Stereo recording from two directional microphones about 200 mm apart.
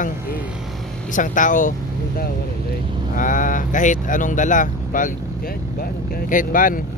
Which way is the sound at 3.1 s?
40° left (ahead or behind).